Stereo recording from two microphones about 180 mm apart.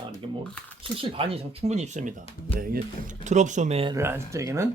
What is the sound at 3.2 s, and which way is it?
Speech, 40° right (ahead or behind).